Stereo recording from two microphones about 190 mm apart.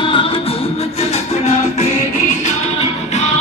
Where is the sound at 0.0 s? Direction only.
25° left (ahead or behind).